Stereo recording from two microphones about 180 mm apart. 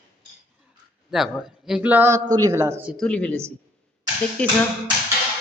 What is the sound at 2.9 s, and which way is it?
A woman's voice, 5° left (ahead or behind).